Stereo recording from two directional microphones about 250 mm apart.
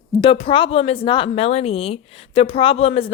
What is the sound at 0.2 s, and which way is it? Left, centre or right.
A woman's voice, left.